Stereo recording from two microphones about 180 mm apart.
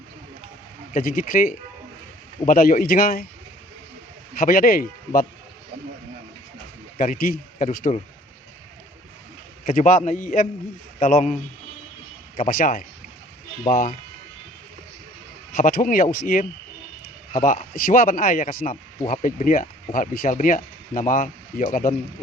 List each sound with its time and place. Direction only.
0.9 s speech: 50° left (ahead or behind)
4.4 s speech: 50° left (ahead or behind)
7.0 s speech: 50° left (ahead or behind)
9.6 s speech: 45° left (ahead or behind)
12.4 s speech: 50° left (ahead or behind)
15.5 s speech: 50° left (ahead or behind)